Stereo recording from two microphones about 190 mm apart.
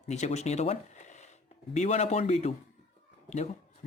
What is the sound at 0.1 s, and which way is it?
Speech, 35° left (ahead or behind).